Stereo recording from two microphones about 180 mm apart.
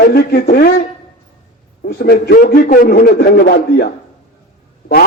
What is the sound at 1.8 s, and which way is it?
Speech, 60° left (ahead or behind).